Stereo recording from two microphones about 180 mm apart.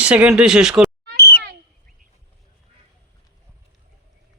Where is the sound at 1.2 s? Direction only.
60° left (ahead or behind).